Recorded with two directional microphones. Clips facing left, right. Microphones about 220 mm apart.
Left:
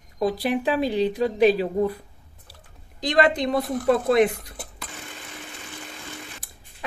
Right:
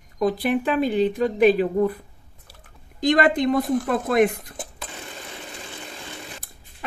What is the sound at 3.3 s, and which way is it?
Speech, 50° right (ahead or behind).